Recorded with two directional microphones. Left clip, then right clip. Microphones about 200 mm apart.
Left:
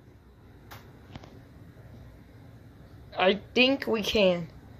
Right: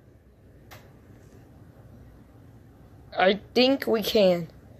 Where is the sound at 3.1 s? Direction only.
15° right (ahead or behind).